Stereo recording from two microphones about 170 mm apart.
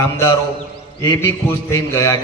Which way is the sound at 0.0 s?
20° left (ahead or behind).